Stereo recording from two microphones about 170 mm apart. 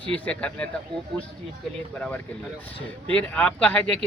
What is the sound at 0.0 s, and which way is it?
Speech, 5° left (ahead or behind).